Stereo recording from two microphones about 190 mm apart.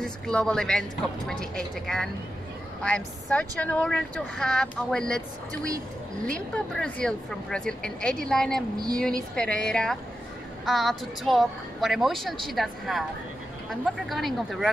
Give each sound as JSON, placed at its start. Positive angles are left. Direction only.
{"t": 0.0, "sound": "a woman's voice", "side_deg": 5}
{"t": 6.2, "sound": "a woman's voice", "side_deg": 5}